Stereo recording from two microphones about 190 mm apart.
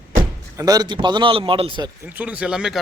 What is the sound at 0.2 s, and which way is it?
Speech, 20° right (ahead or behind).